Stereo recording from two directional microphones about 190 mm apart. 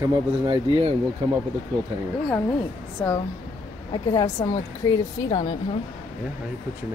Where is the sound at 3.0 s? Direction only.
10° left (ahead or behind).